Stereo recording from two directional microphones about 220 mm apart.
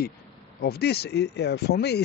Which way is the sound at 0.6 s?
45° left (ahead or behind).